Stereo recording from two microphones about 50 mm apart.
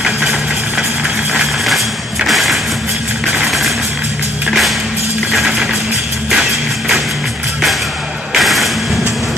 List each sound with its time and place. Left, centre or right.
2.2 s music: centre
6.3 s music: centre
8.3 s thump: centre